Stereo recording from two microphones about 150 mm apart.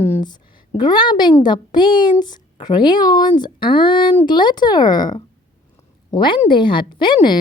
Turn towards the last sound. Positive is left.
turn(degrees=30)  # may be behind; listen again after turning